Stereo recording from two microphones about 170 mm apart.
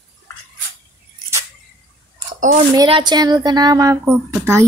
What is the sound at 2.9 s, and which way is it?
A woman's voice, 25° right (ahead or behind).